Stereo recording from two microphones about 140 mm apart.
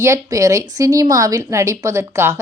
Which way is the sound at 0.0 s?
20° right (ahead or behind).